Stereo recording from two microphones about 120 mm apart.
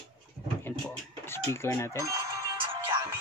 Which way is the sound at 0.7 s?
20° left (ahead or behind).